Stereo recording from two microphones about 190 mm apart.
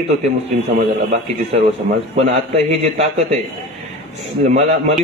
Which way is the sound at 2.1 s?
35° right (ahead or behind).